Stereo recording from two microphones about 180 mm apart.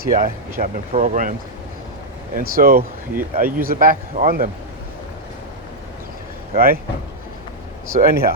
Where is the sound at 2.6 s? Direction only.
55° right (ahead or behind).